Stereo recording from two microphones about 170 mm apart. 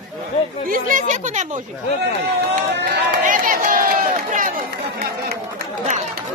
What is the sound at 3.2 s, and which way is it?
Speech, 50° right (ahead or behind).